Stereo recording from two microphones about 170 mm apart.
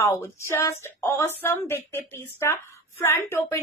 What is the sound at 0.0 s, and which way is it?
Speech, 15° left (ahead or behind).